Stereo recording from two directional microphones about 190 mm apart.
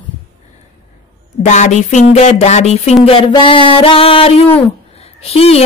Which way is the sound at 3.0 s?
30° left (ahead or behind).